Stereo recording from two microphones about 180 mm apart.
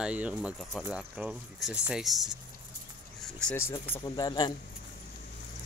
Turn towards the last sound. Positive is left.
turn(degrees=20)  # may be behind; listen again after turning